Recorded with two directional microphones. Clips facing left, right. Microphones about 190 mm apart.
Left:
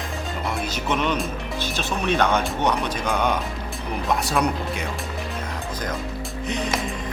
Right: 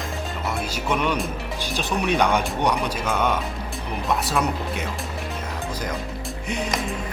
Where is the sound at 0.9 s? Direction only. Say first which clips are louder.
Even; 10° right (ahead or behind).